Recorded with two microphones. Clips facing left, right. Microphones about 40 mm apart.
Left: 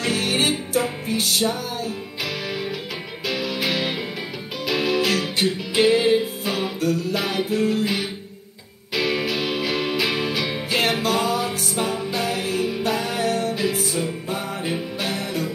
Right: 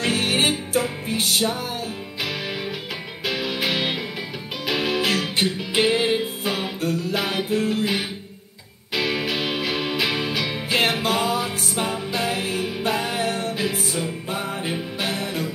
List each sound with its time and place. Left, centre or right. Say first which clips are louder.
0.0 s music: right 1 dB; centre
3.3 s music: even; centre
6.8 s music: left 3 dB; right
7.2 s music: left 1 dB; centre
10.8 s music: even; centre
13.6 s music: left 2 dB; centre